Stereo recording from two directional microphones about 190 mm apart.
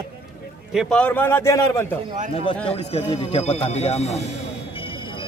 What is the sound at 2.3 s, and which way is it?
A man's voice, 30° left (ahead or behind).